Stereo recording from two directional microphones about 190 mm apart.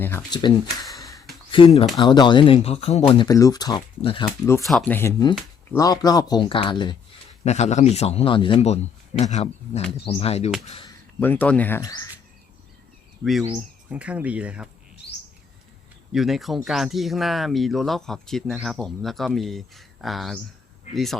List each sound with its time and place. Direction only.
0.0 s speech: 10° left (ahead or behind); by 4.3 s 25° left (ahead or behind)
4.6 s speech: centre (ahead or behind)
4.9 s speech: 15° left (ahead or behind)
7.4 s a man's voice: 35° left (ahead or behind)
11.2 s speech: 10° left (ahead or behind)
13.9 s speech: 5° right (ahead or behind)
16.1 s speech: centre (ahead or behind)